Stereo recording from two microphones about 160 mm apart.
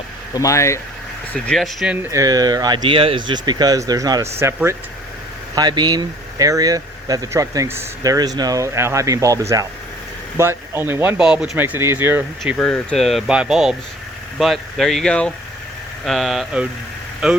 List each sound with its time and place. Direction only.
0.3 s speech: 20° left (ahead or behind)
1.3 s speech: 5° left (ahead or behind); by 12.2 s 15° right (ahead or behind)
12.5 s speech: 5° left (ahead or behind)